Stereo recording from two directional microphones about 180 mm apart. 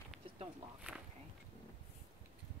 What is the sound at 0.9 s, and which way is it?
Speech, 5° right (ahead or behind).